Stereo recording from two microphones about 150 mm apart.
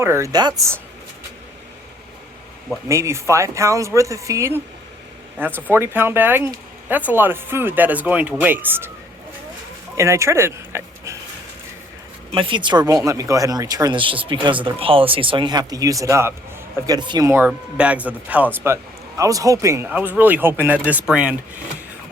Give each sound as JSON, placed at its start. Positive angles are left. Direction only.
{"t": 0.0, "sound": "speech", "side_deg": -20}
{"t": 2.9, "sound": "a man's voice", "side_deg": -20}
{"t": 10.0, "sound": "speech", "side_deg": -20}
{"t": 12.3, "sound": "speech", "side_deg": -35}
{"t": 17.2, "sound": "a man's voice", "side_deg": -15}